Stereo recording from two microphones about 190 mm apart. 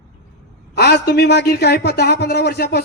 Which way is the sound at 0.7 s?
55° left (ahead or behind).